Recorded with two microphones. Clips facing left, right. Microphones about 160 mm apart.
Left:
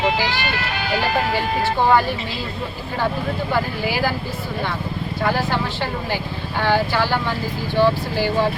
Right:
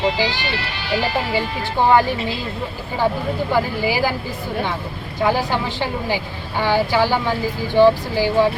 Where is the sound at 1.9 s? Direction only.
15° right (ahead or behind).